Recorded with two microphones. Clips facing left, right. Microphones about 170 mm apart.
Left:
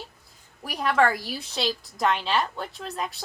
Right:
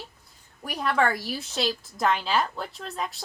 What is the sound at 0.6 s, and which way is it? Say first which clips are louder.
A woman's voice: left 2 dB; centre (ahead or behind).